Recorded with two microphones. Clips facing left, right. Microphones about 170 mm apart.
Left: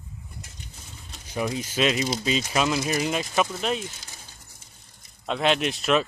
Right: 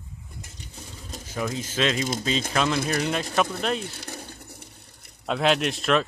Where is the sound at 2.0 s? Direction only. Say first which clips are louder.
Left 1 dB; 50° right (ahead or behind).